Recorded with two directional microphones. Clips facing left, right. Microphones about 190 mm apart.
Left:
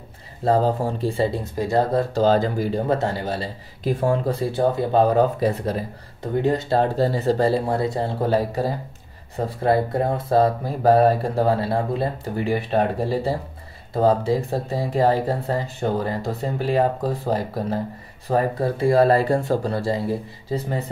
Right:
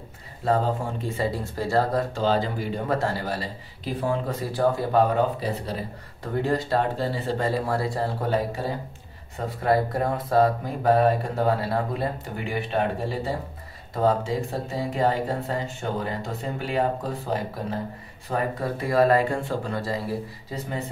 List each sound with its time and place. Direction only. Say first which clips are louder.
0.5 s speech: left 4 dB; 35° left (ahead or behind); by 1.9 s 15° left (ahead or behind)
2.0 s speech: left 5 dB; 40° left (ahead or behind)
2.9 s speech: left 3 dB; 20° left (ahead or behind)
3.8 s speech: left 5 dB; 45° left (ahead or behind)
4.3 s speech: left 3 dB; 25° left (ahead or behind)
5.1 s speech: left 5 dB; 50° left (ahead or behind)
6.2 s speech: left 4 dB; 20° left (ahead or behind)
7.0 s speech: left 7 dB; 40° left (ahead or behind)